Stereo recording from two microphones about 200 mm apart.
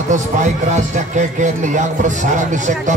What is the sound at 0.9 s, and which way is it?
A man's voice, 35° right (ahead or behind).